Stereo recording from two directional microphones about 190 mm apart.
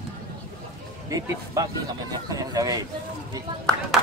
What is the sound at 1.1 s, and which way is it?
Speech, 20° right (ahead or behind).